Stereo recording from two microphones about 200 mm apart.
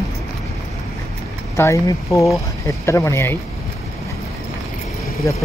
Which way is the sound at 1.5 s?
15° left (ahead or behind).